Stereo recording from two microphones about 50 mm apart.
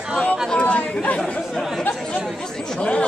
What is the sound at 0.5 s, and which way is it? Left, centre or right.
Speech, left.